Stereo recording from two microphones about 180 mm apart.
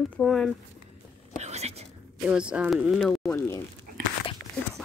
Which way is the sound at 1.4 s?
35° right (ahead or behind).